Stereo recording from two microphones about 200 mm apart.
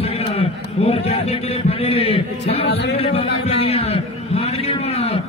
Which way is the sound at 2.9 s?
30° left (ahead or behind).